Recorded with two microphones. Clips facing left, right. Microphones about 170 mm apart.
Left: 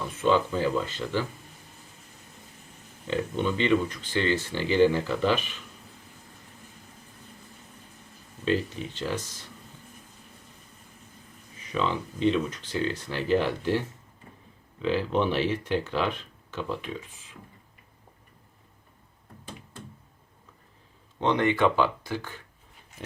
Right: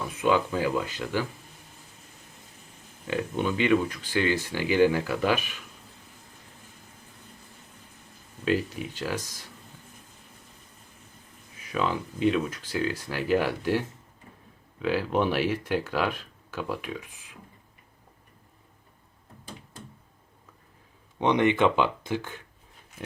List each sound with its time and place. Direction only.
0.2 s speech: 10° right (ahead or behind)
3.1 s speech: 10° right (ahead or behind)
8.4 s speech: 10° right (ahead or behind)
11.7 s speech: 10° right (ahead or behind)
21.2 s speech: 15° right (ahead or behind)